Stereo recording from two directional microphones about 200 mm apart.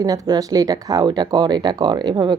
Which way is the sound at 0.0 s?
20° right (ahead or behind).